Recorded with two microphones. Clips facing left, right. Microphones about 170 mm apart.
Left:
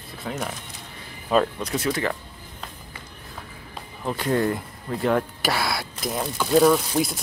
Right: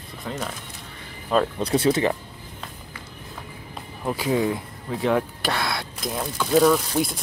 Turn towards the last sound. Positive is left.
turn(degrees=0)  # may be behind; listen again after turning